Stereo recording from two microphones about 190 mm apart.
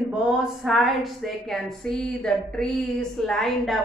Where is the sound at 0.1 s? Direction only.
5° right (ahead or behind).